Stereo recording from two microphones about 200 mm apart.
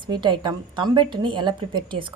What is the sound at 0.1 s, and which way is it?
A woman's voice, 20° right (ahead or behind).